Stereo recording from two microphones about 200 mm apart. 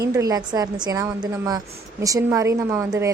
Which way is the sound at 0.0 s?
15° right (ahead or behind).